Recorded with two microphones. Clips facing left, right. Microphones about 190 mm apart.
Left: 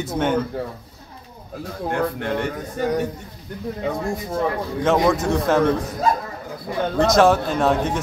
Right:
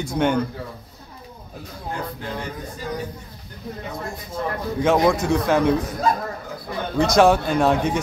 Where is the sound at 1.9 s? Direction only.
65° left (ahead or behind).